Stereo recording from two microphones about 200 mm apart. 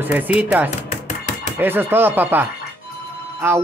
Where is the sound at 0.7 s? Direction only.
35° left (ahead or behind).